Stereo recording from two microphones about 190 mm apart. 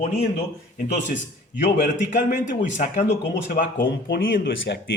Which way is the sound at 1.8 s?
40° left (ahead or behind).